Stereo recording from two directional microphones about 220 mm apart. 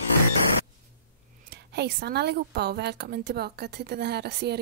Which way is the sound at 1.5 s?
50° right (ahead or behind).